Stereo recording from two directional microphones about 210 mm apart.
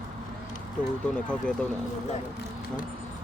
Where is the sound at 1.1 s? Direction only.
5° left (ahead or behind).